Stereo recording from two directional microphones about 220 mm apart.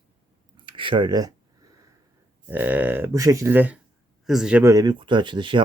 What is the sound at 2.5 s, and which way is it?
Speech, 10° right (ahead or behind).